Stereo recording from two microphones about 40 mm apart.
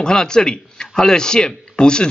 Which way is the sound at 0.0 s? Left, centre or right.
Centre.